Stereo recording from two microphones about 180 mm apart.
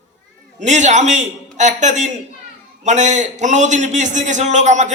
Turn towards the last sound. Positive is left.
turn(degrees=-40)  # may be behind; listen again after turning